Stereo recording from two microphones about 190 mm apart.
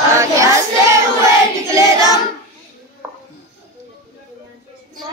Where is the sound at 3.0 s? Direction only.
10° right (ahead or behind).